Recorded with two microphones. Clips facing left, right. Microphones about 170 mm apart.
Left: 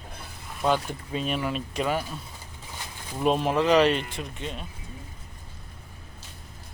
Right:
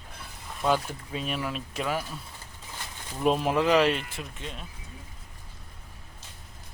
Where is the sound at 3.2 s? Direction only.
Centre (ahead or behind).